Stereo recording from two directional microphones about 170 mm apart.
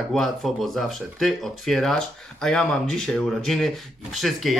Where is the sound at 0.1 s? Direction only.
Centre (ahead or behind).